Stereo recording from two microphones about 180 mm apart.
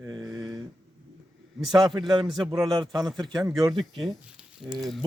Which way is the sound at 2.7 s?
20° right (ahead or behind).